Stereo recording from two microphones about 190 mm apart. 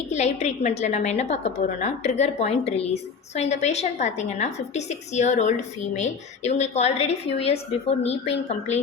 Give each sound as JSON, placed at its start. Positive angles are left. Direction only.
{"t": 0.1, "sound": "a woman's voice", "side_deg": 35}